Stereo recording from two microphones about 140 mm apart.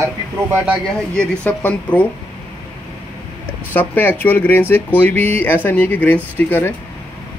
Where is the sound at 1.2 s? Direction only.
10° left (ahead or behind).